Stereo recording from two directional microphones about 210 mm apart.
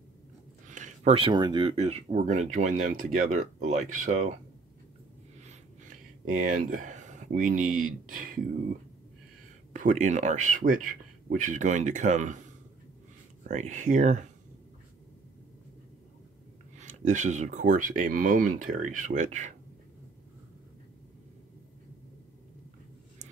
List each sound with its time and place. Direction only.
0.7 s speech: 35° right (ahead or behind)
6.3 s speech: 40° right (ahead or behind)
9.7 s speech: 35° right (ahead or behind)
16.7 s speech: 35° right (ahead or behind)